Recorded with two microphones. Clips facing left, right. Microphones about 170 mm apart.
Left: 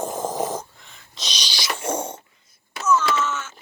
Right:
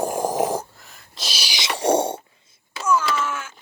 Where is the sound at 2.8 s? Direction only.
10° right (ahead or behind).